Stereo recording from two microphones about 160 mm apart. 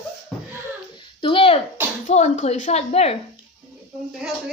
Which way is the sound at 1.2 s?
35° left (ahead or behind).